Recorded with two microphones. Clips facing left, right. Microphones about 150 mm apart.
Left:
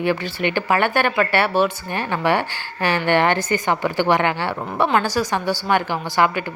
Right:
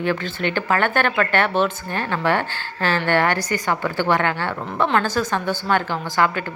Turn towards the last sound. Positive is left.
turn(degrees=15)  # may be behind; listen again after turning